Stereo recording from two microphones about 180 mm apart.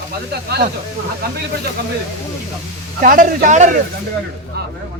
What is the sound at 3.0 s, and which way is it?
Speech, 50° right (ahead or behind).